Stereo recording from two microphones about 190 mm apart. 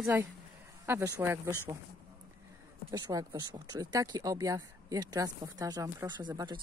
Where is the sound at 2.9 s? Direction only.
20° right (ahead or behind).